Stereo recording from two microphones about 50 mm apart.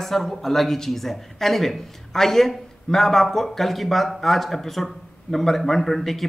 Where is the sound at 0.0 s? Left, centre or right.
Centre.